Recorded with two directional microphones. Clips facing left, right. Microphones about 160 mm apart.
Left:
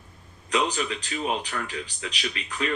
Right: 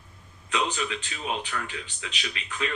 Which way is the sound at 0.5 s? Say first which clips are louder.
Left 3 dB; 40° left (ahead or behind).